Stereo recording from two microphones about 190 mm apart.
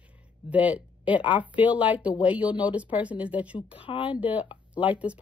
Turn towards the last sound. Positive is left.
turn(degrees=-5)  # may be behind; listen again after turning